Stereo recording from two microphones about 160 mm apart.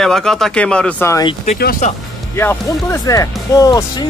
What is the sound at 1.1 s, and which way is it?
Speech, 25° left (ahead or behind).